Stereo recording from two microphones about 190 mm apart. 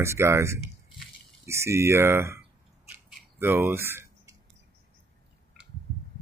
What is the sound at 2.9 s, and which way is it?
Scissors, 10° right (ahead or behind).